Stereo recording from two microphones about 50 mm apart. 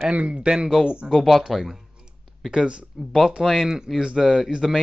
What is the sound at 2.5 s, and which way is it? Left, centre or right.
Speech, centre.